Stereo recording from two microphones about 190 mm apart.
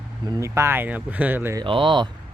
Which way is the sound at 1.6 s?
25° right (ahead or behind).